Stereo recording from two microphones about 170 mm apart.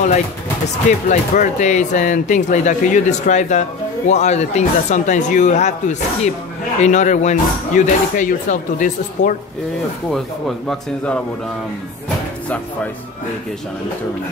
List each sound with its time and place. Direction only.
1.0 s speech: 50° left (ahead or behind)